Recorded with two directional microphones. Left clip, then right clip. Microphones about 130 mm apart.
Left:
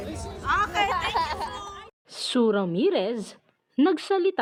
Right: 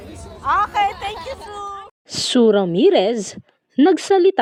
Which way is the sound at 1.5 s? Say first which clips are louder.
Right 7 dB; 10° right (ahead or behind).